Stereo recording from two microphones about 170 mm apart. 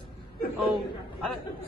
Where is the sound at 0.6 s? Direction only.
Centre (ahead or behind).